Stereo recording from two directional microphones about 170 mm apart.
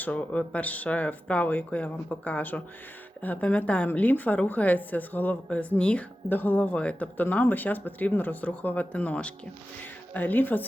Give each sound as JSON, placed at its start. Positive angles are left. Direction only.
{"t": 0.0, "sound": "a woman's voice", "side_deg": 10}